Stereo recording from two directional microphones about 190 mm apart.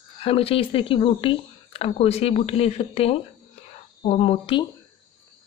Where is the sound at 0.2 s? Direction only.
30° left (ahead or behind).